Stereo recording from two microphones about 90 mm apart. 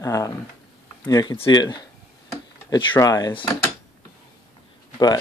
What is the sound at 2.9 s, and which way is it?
Speech, 45° left (ahead or behind).